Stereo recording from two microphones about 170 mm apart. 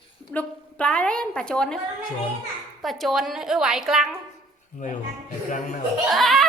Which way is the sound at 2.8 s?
Centre (ahead or behind).